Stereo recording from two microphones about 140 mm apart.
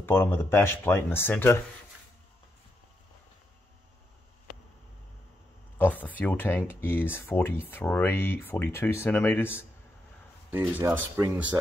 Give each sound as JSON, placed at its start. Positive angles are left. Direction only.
{"t": 0.0, "sound": "speech", "side_deg": 15}
{"t": 5.8, "sound": "speech", "side_deg": 10}
{"t": 10.5, "sound": "speech", "side_deg": -15}